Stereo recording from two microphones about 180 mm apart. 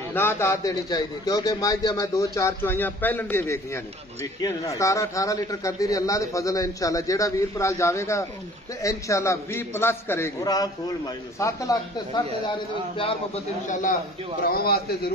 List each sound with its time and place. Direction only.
0.1 s a man's voice: 10° left (ahead or behind)
12.9 s a man's voice: 30° left (ahead or behind)
13.7 s a man's voice: 45° left (ahead or behind)
14.4 s a man's voice: 55° left (ahead or behind)